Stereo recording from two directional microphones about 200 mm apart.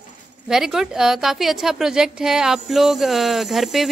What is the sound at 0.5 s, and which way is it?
A woman's voice, centre (ahead or behind).